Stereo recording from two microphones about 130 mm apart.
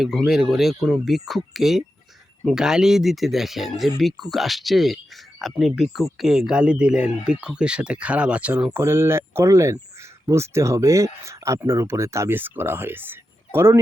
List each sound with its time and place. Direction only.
0.3 s speech: centre (ahead or behind); by 13.7 s 20° right (ahead or behind)